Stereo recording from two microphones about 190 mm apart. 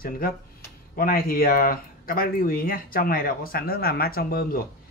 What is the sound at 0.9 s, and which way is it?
Speech, 50° left (ahead or behind).